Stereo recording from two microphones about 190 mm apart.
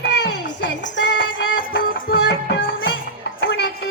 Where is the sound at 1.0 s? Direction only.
70° left (ahead or behind).